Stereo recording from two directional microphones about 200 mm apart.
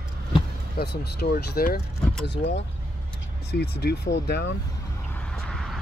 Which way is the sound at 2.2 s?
60° left (ahead or behind).